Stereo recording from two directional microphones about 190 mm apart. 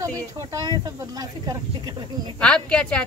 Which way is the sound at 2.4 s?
5° left (ahead or behind).